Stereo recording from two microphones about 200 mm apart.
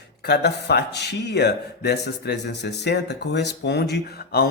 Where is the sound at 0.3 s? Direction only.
55° left (ahead or behind).